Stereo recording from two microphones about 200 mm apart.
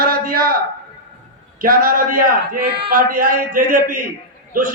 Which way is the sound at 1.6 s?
45° right (ahead or behind).